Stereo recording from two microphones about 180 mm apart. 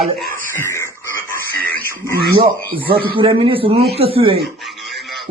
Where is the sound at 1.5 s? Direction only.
55° right (ahead or behind).